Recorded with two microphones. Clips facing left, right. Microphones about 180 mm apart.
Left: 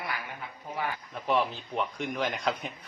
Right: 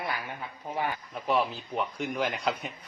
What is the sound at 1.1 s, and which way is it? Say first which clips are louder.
A man's voice: even; 5° right (ahead or behind).